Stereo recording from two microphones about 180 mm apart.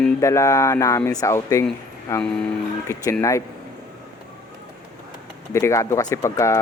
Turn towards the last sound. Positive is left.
turn(degrees=15)  # may be behind; listen again after turning